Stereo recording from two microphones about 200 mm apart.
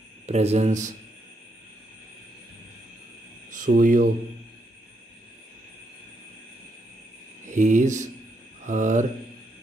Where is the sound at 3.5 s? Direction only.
40° right (ahead or behind).